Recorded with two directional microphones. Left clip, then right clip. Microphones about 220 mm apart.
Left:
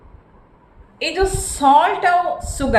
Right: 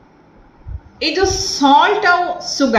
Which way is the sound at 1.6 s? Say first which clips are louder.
Right 1 dB; 50° left (ahead or behind).